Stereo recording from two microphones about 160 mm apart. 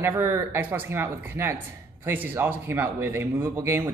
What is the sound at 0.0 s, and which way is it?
Speech, 15° right (ahead or behind).